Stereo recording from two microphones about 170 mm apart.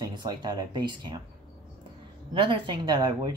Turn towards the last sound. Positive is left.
turn(degrees=-25)  # may be behind; listen again after turning